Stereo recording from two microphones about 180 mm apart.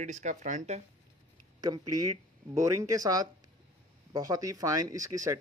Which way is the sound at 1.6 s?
20° right (ahead or behind).